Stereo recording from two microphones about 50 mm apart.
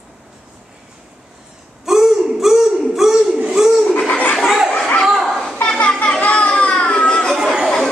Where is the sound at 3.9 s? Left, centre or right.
Left.